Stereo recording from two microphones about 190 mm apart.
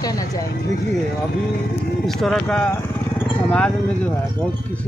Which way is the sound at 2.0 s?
Centre (ahead or behind).